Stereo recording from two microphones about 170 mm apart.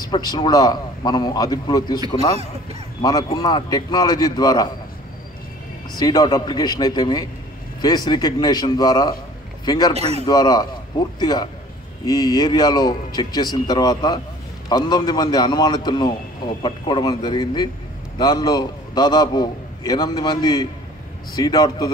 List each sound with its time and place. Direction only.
0.0 s a man's voice: 25° left (ahead or behind)
3.0 s a man's voice: 25° left (ahead or behind)
5.9 s a man's voice: 25° left (ahead or behind)
9.9 s a man's voice: 35° right (ahead or behind)
10.2 s a man's voice: 25° left (ahead or behind)